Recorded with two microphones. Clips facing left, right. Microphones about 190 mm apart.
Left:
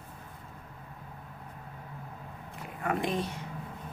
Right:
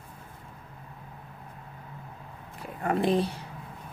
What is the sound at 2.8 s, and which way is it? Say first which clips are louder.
Speech: right 6 dB; 35° right (ahead or behind).